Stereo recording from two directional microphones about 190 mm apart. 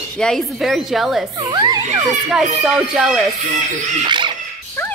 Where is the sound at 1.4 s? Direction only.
20° right (ahead or behind).